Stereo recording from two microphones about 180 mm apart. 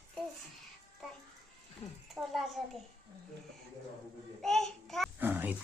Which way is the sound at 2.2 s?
10° right (ahead or behind).